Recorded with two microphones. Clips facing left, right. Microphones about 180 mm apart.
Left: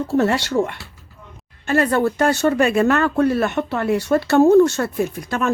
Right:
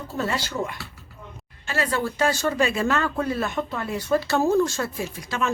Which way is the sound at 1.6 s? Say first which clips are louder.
Left 8 dB; 55° left (ahead or behind).